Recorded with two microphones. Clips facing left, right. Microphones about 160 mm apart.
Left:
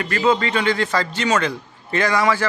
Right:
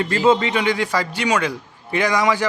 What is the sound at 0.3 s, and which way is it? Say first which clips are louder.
A man's voice: right 1 dB; 20° right (ahead or behind).